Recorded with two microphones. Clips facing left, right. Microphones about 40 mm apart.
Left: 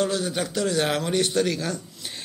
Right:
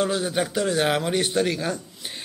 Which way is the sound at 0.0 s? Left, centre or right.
Centre.